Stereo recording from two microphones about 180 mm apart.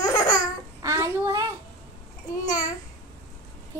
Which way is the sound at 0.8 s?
15° right (ahead or behind).